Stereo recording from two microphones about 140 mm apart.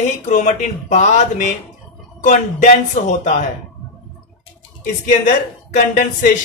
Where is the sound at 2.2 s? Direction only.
60° left (ahead or behind).